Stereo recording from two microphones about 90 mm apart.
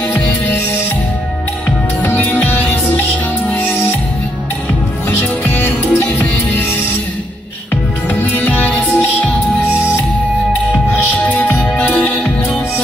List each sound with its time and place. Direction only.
2.0 s music: 20° left (ahead or behind)
5.4 s music: 20° left (ahead or behind)
8.1 s music: 15° left (ahead or behind)
11.3 s music: 20° left (ahead or behind)